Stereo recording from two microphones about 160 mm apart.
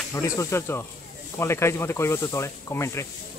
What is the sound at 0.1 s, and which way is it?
Speech, 20° left (ahead or behind).